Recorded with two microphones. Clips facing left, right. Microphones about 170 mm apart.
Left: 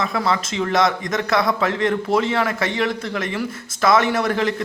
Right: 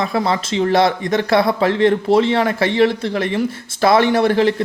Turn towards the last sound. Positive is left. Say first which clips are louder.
# right 6 dB
turn(degrees=-30)  # may be behind; listen again after turning